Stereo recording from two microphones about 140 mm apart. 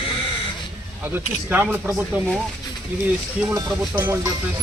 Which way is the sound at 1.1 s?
15° right (ahead or behind).